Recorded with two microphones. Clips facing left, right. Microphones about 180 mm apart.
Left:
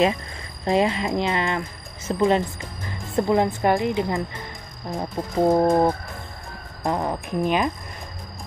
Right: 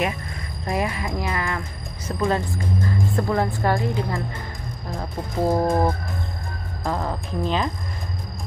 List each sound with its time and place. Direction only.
0.7 s a woman's voice: 25° left (ahead or behind)